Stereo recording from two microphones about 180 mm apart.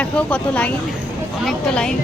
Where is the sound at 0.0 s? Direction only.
5° left (ahead or behind).